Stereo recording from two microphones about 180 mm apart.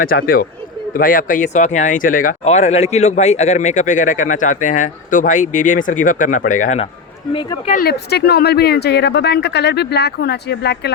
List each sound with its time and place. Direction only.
0.0 s speech: 55° left (ahead or behind)
7.3 s speech: 30° left (ahead or behind)
7.7 s speech: 55° left (ahead or behind)